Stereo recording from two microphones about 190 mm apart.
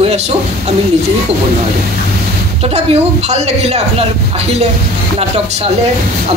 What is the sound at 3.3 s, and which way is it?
Speech, 35° right (ahead or behind).